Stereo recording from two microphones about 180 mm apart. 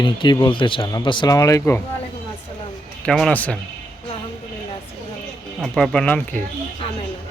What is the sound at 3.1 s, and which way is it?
Speech, 5° left (ahead or behind).